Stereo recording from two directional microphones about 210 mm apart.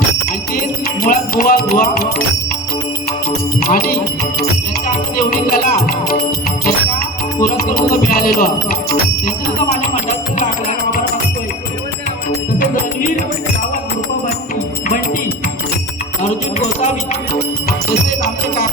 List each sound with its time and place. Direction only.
1.0 s music: 40° left (ahead or behind)
3.6 s music: 45° left (ahead or behind)
5.1 s music: 45° left (ahead or behind)
7.8 s music: 45° left (ahead or behind)
16.2 s music: 35° left (ahead or behind)
17.7 s music: 45° left (ahead or behind)